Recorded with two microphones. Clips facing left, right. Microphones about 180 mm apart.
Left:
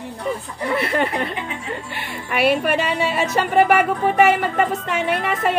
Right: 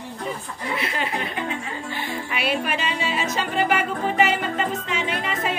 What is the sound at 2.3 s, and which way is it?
A woman's voice, 55° left (ahead or behind).